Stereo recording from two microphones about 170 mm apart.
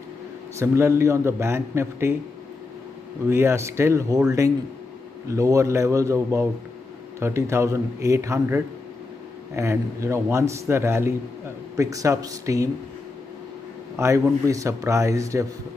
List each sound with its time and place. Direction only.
0.6 s a man's voice: 15° right (ahead or behind)
3.3 s a man's voice: 15° right (ahead or behind)
5.3 s a man's voice: 20° right (ahead or behind)
13.9 s a man's voice: 15° right (ahead or behind)